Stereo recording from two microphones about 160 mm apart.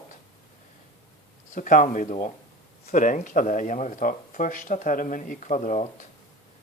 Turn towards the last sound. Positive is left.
turn(degrees=55)  # may be behind; listen again after turning